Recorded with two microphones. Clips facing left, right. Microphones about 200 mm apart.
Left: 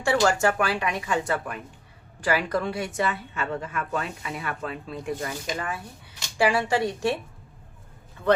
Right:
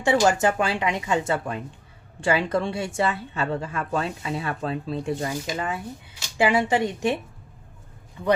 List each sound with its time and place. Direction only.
0.0 s a woman's voice: 20° right (ahead or behind)